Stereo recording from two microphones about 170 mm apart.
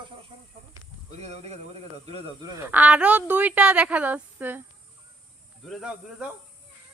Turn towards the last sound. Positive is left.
turn(degrees=-5)  # may be behind; listen again after turning